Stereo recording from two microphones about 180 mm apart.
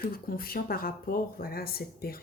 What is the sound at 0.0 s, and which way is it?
Speech, 55° left (ahead or behind).